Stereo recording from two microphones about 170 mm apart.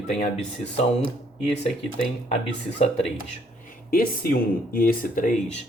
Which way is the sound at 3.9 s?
60° left (ahead or behind).